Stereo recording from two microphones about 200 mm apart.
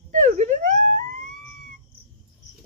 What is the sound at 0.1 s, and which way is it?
Wail, 40° right (ahead or behind).